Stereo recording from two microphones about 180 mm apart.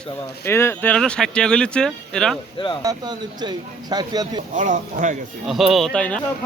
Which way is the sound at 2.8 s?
25° right (ahead or behind).